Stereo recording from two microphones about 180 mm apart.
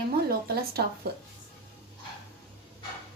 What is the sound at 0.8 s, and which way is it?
Speech, 60° right (ahead or behind).